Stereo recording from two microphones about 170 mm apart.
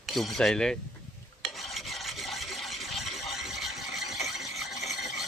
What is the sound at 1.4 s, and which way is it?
Stir, centre (ahead or behind).